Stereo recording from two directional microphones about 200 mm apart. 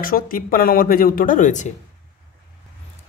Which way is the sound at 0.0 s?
45° left (ahead or behind).